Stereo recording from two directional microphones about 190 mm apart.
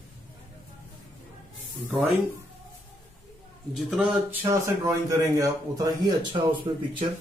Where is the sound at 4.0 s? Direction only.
15° right (ahead or behind).